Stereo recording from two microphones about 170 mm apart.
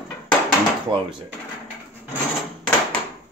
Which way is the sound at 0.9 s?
30° right (ahead or behind).